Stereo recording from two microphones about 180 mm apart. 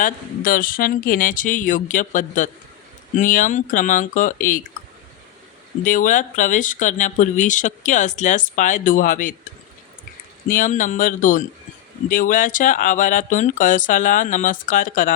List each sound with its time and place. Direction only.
0.0 s speech: 50° left (ahead or behind)
5.8 s speech: 45° left (ahead or behind)
10.5 s speech: 45° left (ahead or behind)